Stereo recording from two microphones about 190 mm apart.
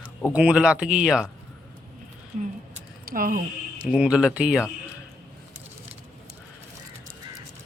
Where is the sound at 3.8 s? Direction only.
5° right (ahead or behind).